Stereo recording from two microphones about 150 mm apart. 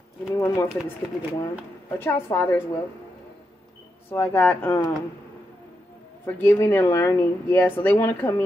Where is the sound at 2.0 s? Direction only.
15° left (ahead or behind).